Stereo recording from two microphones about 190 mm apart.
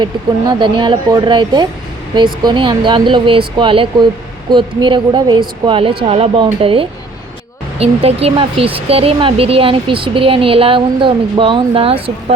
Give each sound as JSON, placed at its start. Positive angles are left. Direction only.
{"t": 0.0, "sound": "speech", "side_deg": -25}